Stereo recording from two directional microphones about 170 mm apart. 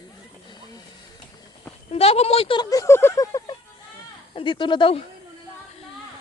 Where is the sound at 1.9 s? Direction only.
35° left (ahead or behind).